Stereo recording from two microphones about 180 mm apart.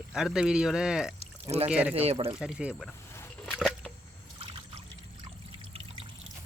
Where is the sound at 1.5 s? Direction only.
35° right (ahead or behind).